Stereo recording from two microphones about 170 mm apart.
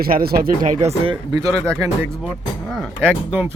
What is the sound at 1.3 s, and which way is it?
Speech, 20° right (ahead or behind).